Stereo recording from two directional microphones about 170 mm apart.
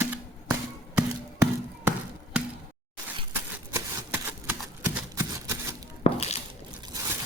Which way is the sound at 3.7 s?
10° right (ahead or behind).